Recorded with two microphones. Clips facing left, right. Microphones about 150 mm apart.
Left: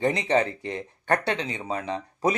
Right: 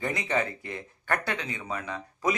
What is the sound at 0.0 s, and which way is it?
Speech, 30° left (ahead or behind).